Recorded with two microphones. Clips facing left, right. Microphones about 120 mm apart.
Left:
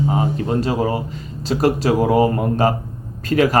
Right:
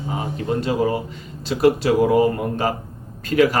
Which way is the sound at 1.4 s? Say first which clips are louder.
Even; 40° left (ahead or behind).